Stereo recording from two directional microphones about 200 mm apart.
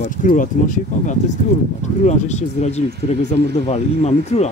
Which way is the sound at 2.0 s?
35° left (ahead or behind).